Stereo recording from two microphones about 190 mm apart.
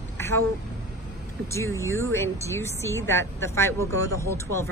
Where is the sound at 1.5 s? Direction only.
15° left (ahead or behind).